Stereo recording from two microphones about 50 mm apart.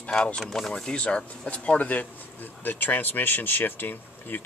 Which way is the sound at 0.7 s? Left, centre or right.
Centre.